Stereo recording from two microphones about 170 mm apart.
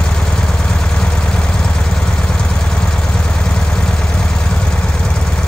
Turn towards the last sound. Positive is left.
turn(degrees=5)  # may be behind; listen again after turning